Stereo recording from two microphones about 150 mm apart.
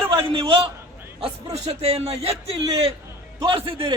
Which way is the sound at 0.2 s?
35° right (ahead or behind).